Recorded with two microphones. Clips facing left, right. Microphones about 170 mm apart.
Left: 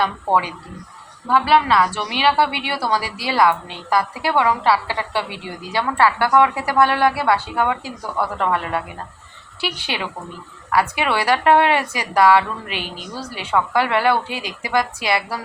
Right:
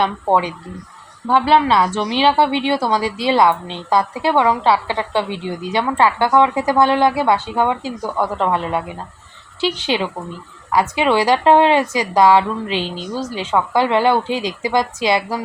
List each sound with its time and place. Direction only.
0.0 s a woman's voice: 20° right (ahead or behind)